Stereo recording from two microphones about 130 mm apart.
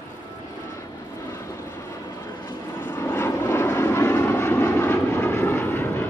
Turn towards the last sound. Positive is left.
turn(degrees=15)  # may be behind; listen again after turning